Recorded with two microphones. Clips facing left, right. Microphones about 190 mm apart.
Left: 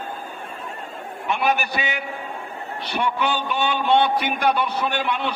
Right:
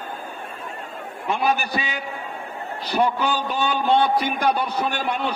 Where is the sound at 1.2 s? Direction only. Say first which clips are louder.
Even; 35° right (ahead or behind).